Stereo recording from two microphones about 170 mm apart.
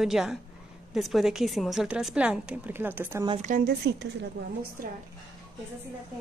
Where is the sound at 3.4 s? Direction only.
50° right (ahead or behind).